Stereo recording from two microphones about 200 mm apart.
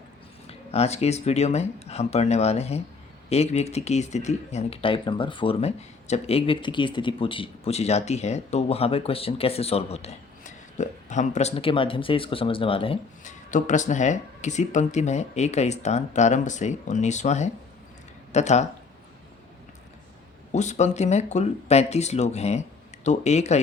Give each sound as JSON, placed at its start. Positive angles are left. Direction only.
{"t": 0.4, "sound": "speech", "side_deg": 30}
{"t": 20.5, "sound": "speech", "side_deg": 35}